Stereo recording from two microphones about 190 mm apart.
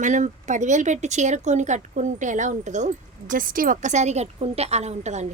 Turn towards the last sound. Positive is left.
turn(degrees=-35)  # may be behind; listen again after turning